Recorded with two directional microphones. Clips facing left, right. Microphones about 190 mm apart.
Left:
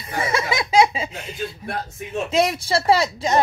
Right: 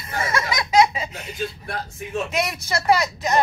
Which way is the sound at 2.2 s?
30° left (ahead or behind).